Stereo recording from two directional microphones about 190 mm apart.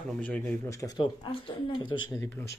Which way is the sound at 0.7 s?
20° left (ahead or behind).